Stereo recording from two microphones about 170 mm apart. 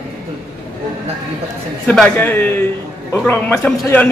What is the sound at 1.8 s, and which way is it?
Speech, 5° left (ahead or behind).